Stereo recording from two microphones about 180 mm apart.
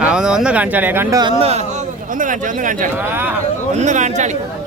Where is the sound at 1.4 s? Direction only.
35° right (ahead or behind).